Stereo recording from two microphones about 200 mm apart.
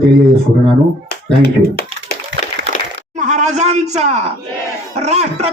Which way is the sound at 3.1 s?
35° right (ahead or behind).